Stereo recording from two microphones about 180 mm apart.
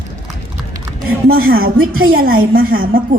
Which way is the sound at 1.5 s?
55° right (ahead or behind).